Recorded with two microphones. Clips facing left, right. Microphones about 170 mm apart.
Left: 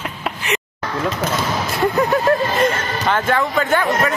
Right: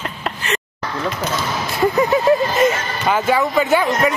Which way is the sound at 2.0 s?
5° right (ahead or behind).